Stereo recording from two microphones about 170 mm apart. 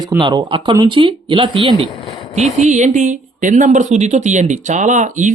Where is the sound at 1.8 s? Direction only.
20° left (ahead or behind).